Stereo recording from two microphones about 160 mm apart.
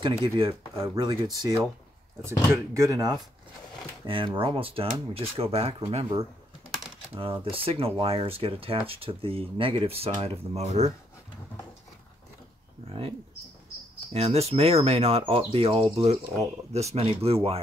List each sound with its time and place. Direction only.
0.5 s speech: 20° right (ahead or behind)
4.0 s speech: 30° right (ahead or behind)
12.8 s speech: 35° right (ahead or behind)
14.1 s speech: 40° right (ahead or behind)